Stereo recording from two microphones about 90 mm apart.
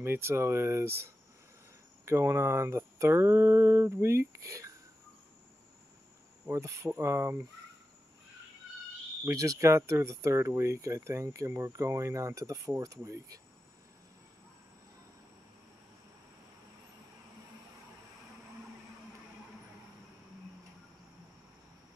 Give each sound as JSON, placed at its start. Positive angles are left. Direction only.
{"t": 0.0, "sound": "speech", "side_deg": -25}
{"t": 6.5, "sound": "speech", "side_deg": -35}
{"t": 9.2, "sound": "speech", "side_deg": -35}